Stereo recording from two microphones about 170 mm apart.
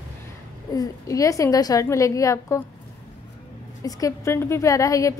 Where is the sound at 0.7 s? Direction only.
20° left (ahead or behind).